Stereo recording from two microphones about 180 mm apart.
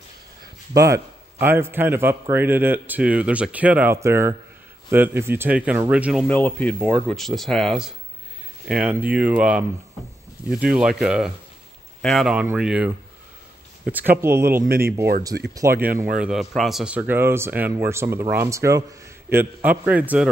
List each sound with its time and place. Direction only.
0.7 s speech: 15° right (ahead or behind)
6.2 s speech: 5° left (ahead or behind)
13.9 s speech: 50° right (ahead or behind)
14.2 s speech: 15° right (ahead or behind)
15.3 s speech: 65° right (ahead or behind)
16.2 s speech: 5° right (ahead or behind)